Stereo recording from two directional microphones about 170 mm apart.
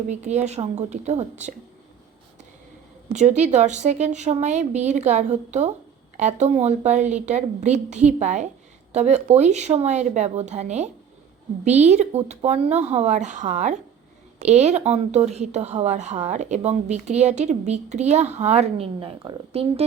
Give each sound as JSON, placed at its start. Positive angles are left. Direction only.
{"t": 0.1, "sound": "a woman's voice", "side_deg": -40}
{"t": 3.1, "sound": "a woman's voice", "side_deg": -40}